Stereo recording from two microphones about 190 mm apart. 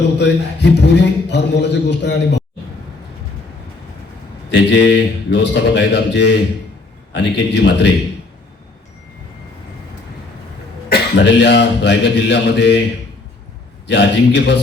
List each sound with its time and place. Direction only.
0.2 s a man's voice: 65° left (ahead or behind)
4.7 s a man's voice: 65° left (ahead or behind)
10.9 s a man's voice: 65° left (ahead or behind)
13.8 s a man's voice: 65° left (ahead or behind)